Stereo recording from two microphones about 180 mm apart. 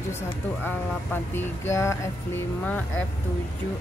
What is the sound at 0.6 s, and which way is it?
Music, 10° left (ahead or behind).